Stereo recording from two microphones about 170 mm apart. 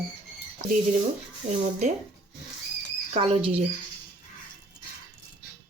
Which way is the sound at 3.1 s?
35° right (ahead or behind).